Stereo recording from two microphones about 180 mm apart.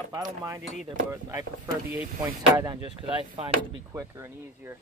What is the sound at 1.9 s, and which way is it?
Speech, 10° right (ahead or behind).